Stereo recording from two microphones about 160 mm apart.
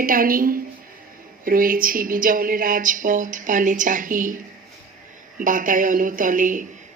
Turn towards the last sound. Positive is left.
turn(degrees=-55)  # may be behind; listen again after turning